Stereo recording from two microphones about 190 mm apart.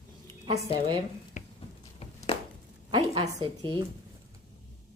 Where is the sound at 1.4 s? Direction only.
40° left (ahead or behind).